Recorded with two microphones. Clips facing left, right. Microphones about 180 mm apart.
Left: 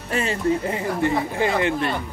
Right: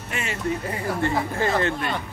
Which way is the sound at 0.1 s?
30° left (ahead or behind).